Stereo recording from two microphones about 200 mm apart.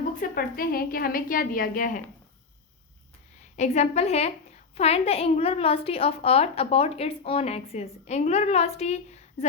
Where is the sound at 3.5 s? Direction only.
35° left (ahead or behind).